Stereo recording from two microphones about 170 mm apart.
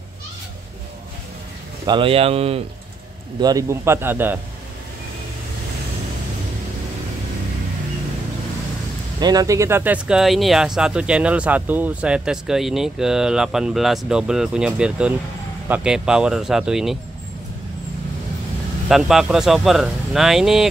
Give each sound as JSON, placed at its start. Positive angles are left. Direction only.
{"t": 1.9, "sound": "speech", "side_deg": -30}
{"t": 3.3, "sound": "a man's voice", "side_deg": -20}
{"t": 9.2, "sound": "speech", "side_deg": -20}
{"t": 18.9, "sound": "speech", "side_deg": 0}